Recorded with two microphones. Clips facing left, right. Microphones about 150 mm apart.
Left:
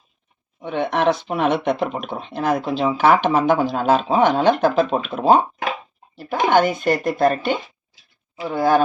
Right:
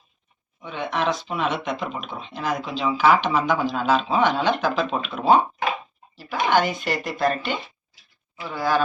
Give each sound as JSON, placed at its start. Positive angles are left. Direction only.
{"t": 0.6, "sound": "speech", "side_deg": 60}